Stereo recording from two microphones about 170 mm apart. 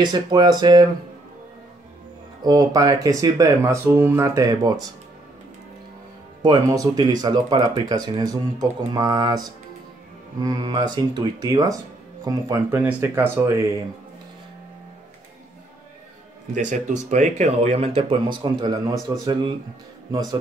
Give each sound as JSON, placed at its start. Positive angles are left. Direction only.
{"t": 0.0, "sound": "speech", "side_deg": -25}
{"t": 2.4, "sound": "speech", "side_deg": -20}
{"t": 6.4, "sound": "speech", "side_deg": -25}
{"t": 16.5, "sound": "speech", "side_deg": -45}